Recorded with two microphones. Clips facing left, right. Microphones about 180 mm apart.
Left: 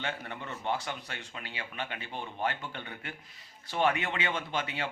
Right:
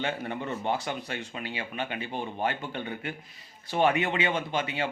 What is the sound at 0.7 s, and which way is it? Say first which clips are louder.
Speech: right 1 dB; 15° right (ahead or behind).